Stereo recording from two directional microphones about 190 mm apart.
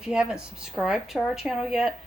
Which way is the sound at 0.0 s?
5° right (ahead or behind).